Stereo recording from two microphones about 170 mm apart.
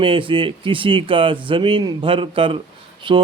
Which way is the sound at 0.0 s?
30° right (ahead or behind).